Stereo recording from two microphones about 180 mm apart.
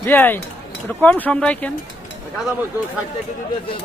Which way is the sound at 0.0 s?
10° left (ahead or behind).